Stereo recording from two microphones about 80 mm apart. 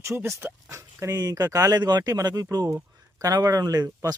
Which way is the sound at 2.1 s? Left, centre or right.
Right.